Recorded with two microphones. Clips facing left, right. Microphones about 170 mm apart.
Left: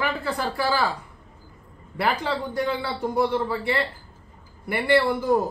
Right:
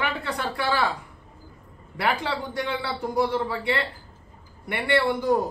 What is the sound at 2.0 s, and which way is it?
A man's voice, centre (ahead or behind).